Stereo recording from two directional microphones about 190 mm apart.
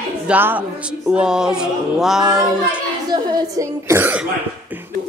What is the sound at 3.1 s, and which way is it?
Speech, 20° right (ahead or behind).